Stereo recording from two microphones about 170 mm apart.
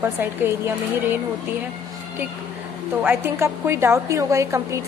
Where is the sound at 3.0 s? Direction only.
15° right (ahead or behind).